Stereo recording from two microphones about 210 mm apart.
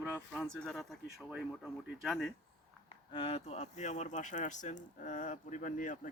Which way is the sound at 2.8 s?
25° left (ahead or behind).